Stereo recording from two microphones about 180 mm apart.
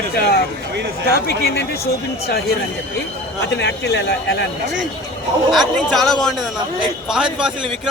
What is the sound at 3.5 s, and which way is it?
A man's voice, 70° left (ahead or behind).